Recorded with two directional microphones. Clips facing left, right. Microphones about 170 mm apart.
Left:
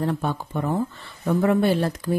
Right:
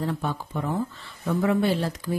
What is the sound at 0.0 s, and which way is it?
A woman's voice, 50° left (ahead or behind).